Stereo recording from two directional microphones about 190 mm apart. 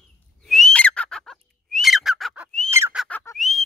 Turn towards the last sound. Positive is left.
turn(degrees=0)  # may be behind; listen again after turning